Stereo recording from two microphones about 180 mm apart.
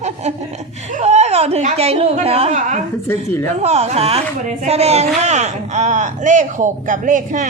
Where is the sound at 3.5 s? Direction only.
35° right (ahead or behind).